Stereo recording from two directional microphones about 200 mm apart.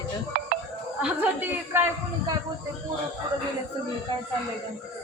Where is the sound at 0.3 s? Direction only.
50° right (ahead or behind).